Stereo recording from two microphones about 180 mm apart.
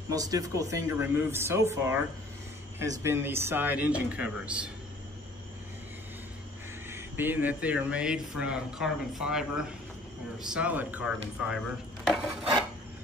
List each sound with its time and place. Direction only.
0.1 s speech: 20° right (ahead or behind)
6.9 s speech: 10° right (ahead or behind)